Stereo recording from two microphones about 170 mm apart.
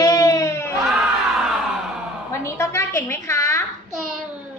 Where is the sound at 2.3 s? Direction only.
15° left (ahead or behind).